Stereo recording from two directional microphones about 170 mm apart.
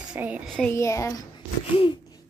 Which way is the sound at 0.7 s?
15° left (ahead or behind).